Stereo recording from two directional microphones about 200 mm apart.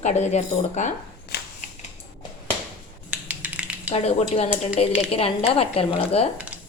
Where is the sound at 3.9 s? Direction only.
30° left (ahead or behind).